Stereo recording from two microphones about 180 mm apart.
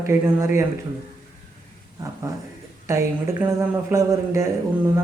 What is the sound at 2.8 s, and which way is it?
Speech, 15° right (ahead or behind).